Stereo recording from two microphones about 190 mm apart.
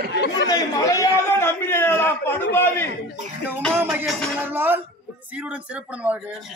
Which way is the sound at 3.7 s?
10° right (ahead or behind).